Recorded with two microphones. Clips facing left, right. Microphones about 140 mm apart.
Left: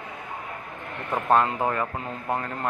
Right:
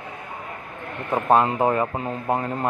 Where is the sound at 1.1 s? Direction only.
20° right (ahead or behind).